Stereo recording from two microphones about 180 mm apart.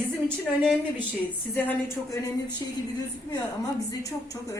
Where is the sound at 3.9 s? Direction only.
20° left (ahead or behind).